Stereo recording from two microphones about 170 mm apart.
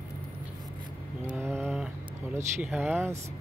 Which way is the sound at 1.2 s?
10° right (ahead or behind).